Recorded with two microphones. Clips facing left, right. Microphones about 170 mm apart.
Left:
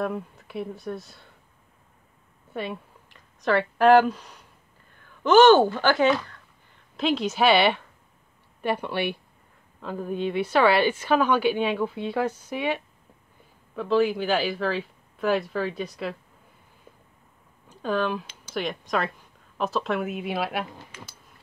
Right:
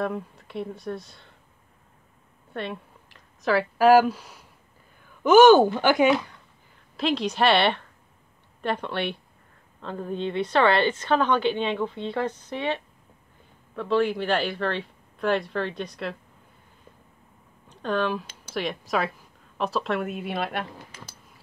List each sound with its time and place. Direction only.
0.0 s speech: centre (ahead or behind)
2.5 s speech: 5° left (ahead or behind)
4.9 s a sound: 10° right (ahead or behind)
7.0 s a woman's voice: centre (ahead or behind)
17.6 s a woman's voice: centre (ahead or behind)
20.9 s a sound: 35° right (ahead or behind)